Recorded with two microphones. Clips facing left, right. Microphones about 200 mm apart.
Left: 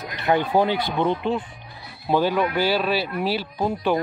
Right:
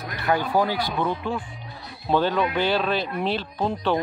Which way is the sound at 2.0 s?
10° left (ahead or behind).